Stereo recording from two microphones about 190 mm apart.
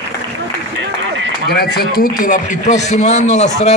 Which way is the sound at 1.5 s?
55° left (ahead or behind).